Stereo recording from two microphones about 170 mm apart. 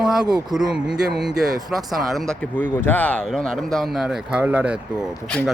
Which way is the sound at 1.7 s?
Centre (ahead or behind).